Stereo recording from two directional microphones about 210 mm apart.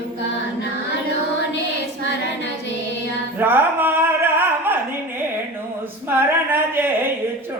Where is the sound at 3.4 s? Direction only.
10° right (ahead or behind).